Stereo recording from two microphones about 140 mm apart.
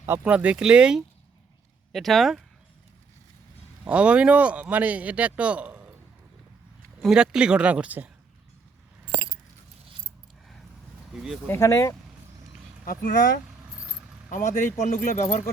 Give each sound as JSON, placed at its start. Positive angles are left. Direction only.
{"t": 0.0, "sound": "speech", "side_deg": -10}
{"t": 3.8, "sound": "speech", "side_deg": -10}
{"t": 7.0, "sound": "speech", "side_deg": -5}
{"t": 11.1, "sound": "speech", "side_deg": -5}
{"t": 11.4, "sound": "speech", "side_deg": 20}
{"t": 12.8, "sound": "speech", "side_deg": 90}
{"t": 14.3, "sound": "speech", "side_deg": 70}